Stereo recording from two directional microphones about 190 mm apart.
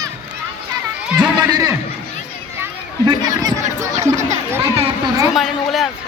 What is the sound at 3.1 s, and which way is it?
Chatter, 20° right (ahead or behind).